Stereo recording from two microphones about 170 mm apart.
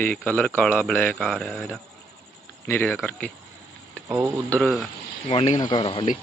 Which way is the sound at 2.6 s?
10° left (ahead or behind).